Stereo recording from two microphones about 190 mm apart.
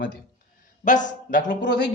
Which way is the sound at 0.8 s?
40° left (ahead or behind).